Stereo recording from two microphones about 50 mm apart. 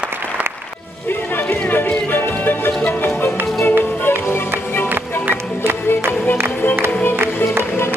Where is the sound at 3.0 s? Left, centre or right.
Left.